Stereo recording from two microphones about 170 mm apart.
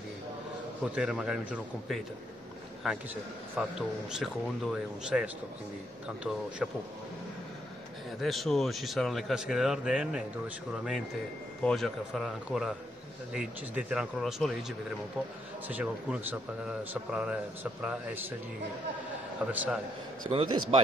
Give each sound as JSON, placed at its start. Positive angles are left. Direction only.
{"t": 0.9, "sound": "a man's voice", "side_deg": -5}
{"t": 6.6, "sound": "a man's voice", "side_deg": -5}
{"t": 8.2, "sound": "a man's voice", "side_deg": 0}
{"t": 11.6, "sound": "a man's voice", "side_deg": 0}
{"t": 15.7, "sound": "speech", "side_deg": -10}
{"t": 19.4, "sound": "speech", "side_deg": -5}
{"t": 20.2, "sound": "a man's voice", "side_deg": -30}